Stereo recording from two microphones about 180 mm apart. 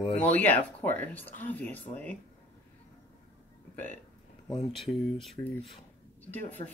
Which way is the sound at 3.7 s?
10° left (ahead or behind).